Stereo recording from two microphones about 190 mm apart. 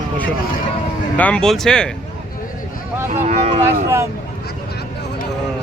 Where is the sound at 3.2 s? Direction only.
35° right (ahead or behind).